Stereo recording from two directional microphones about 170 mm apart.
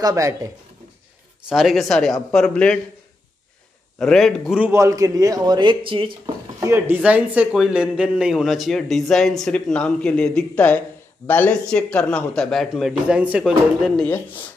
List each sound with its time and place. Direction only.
0.0 s speech: 20° right (ahead or behind)
1.5 s speech: centre (ahead or behind)
4.0 s a man's voice: centre (ahead or behind); by 6.3 s 30° right (ahead or behind)
6.6 s a man's voice: 15° right (ahead or behind); by 14.2 s 5° left (ahead or behind)